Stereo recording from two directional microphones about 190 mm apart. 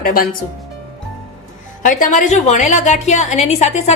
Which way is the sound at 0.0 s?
50° left (ahead or behind).